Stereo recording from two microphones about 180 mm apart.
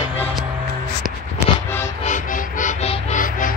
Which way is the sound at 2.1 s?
45° left (ahead or behind).